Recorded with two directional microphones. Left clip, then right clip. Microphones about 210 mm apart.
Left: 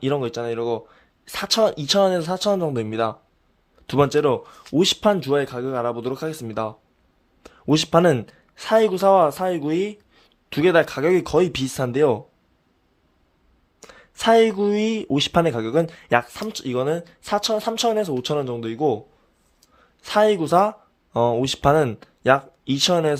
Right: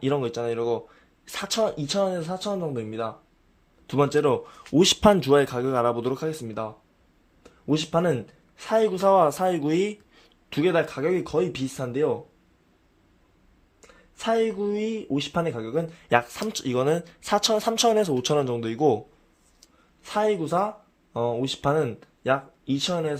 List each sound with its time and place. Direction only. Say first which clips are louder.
0.0 s speech: left 2 dB; 10° left (ahead or behind)
7.4 s speech: left 6 dB; 30° left (ahead or behind); by 10.6 s 5° left (ahead or behind)
10.6 s speech: left 6 dB; 15° left (ahead or behind)
13.8 s speech: left 8 dB; 25° left (ahead or behind)
16.0 s speech: left 2 dB; 10° left (ahead or behind)
20.0 s speech: left 6 dB; 20° left (ahead or behind)